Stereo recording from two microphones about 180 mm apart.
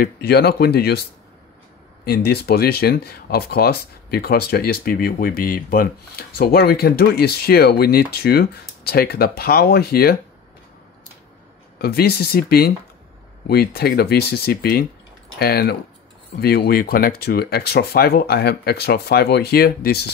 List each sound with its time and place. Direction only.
0.0 s speech: 60° left (ahead or behind)
2.0 s speech: 60° left (ahead or behind)
11.8 s speech: 60° left (ahead or behind)